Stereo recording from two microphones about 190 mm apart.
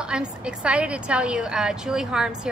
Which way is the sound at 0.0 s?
5° right (ahead or behind).